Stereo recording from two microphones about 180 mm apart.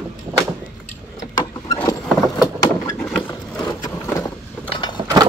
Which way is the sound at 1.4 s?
20° left (ahead or behind).